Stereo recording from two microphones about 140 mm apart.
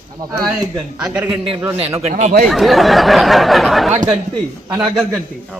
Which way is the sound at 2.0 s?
50° right (ahead or behind).